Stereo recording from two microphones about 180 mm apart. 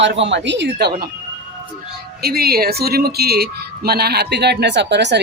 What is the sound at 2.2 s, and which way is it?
Speech, 60° right (ahead or behind).